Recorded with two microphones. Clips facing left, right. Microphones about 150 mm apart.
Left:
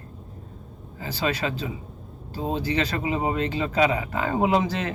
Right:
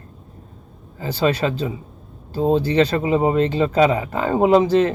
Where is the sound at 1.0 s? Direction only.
30° right (ahead or behind).